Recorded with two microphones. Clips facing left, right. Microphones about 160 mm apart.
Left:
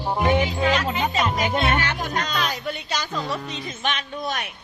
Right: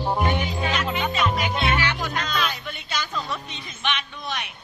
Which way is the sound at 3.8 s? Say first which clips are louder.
Left 1 dB; 40° left (ahead or behind).